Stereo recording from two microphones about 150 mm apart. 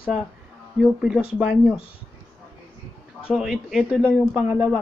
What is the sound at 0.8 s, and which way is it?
Speech, 5° right (ahead or behind).